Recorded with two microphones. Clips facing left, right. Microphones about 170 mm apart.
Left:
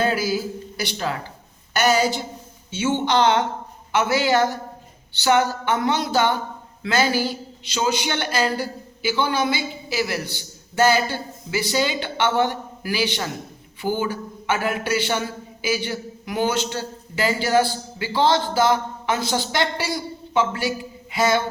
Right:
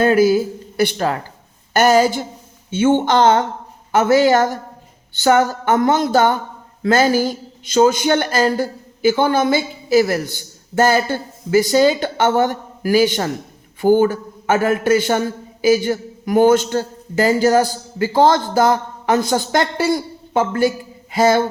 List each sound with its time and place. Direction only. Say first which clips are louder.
0.0 s speech: right 9 dB; 55° right (ahead or behind)